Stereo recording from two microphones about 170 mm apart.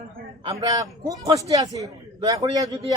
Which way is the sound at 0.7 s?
20° right (ahead or behind).